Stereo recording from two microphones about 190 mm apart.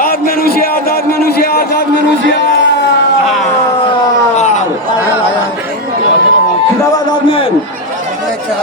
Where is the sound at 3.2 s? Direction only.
Centre (ahead or behind).